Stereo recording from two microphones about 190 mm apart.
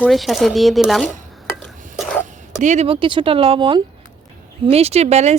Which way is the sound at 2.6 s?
35° right (ahead or behind).